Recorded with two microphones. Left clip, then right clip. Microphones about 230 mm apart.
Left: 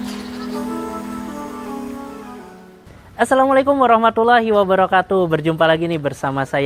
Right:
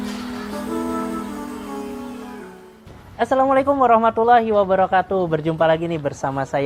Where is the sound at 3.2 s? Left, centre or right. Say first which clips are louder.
Left 3 dB; left.